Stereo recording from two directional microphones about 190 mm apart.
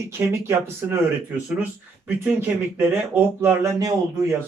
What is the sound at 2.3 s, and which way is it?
Speech, 10° right (ahead or behind).